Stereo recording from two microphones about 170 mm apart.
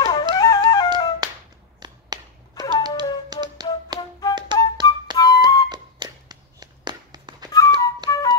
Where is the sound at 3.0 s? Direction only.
25° right (ahead or behind).